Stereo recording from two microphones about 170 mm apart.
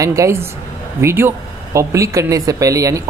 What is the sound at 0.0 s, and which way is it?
A woman's voice, 20° right (ahead or behind).